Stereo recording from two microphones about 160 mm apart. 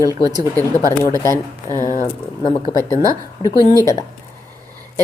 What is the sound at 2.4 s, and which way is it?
Speech, 30° left (ahead or behind).